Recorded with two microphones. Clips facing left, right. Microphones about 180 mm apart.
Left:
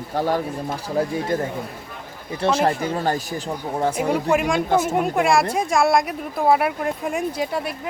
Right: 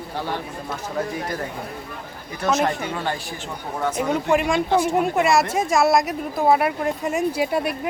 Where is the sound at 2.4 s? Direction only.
30° left (ahead or behind).